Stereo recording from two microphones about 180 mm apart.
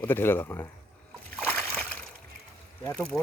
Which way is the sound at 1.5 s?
10° left (ahead or behind).